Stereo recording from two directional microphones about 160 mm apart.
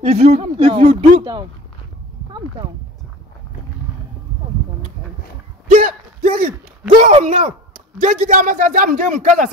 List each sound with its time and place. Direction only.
0.0 s speech: 40° right (ahead or behind)
5.7 s a sound: 60° right (ahead or behind)
7.0 s speech: 45° right (ahead or behind)